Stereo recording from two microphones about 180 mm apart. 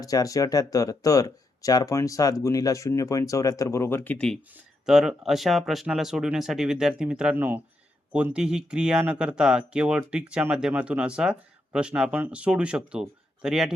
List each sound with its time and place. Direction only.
0.0 s speech: 20° left (ahead or behind); by 13.7 s 5° right (ahead or behind)